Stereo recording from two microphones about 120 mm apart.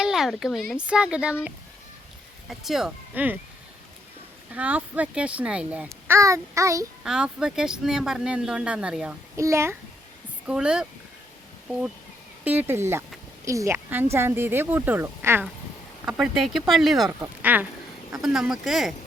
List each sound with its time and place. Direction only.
0.0 s speech: 5° right (ahead or behind)
2.5 s speech: 5° right (ahead or behind)
3.1 s speech: 15° right (ahead or behind)
4.5 s speech: 10° right (ahead or behind)
6.1 s speech: 25° right (ahead or behind)
7.0 s speech: 5° right (ahead or behind)
9.3 s a child's voice: 25° right (ahead or behind)
10.4 s speech: 5° right (ahead or behind)
12.5 s speech: 15° right (ahead or behind)
16.0 s speech: 5° right (ahead or behind)
17.1 s speech: 15° right (ahead or behind)
18.2 s speech: 5° right (ahead or behind)